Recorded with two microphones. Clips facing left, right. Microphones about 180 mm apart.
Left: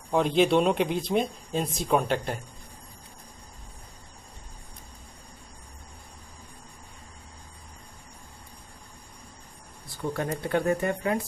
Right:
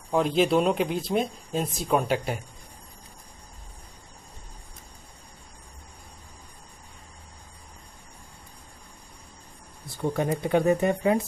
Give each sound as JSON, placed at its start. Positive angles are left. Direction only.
{"t": 0.1, "sound": "speech", "side_deg": 0}
{"t": 10.0, "sound": "speech", "side_deg": -15}